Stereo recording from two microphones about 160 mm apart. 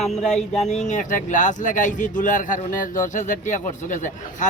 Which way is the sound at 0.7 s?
50° left (ahead or behind).